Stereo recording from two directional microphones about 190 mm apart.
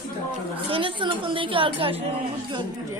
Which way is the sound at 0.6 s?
30° right (ahead or behind).